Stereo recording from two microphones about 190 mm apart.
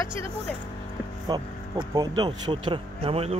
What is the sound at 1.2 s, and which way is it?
Speech, 20° right (ahead or behind).